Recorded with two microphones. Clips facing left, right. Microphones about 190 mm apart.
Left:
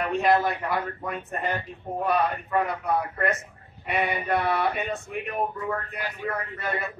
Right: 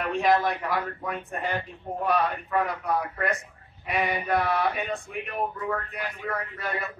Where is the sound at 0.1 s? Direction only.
5° left (ahead or behind).